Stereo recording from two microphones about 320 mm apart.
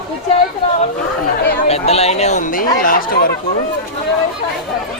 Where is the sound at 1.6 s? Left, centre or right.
Centre.